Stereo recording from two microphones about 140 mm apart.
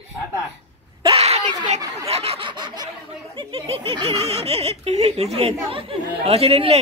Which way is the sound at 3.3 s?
40° right (ahead or behind).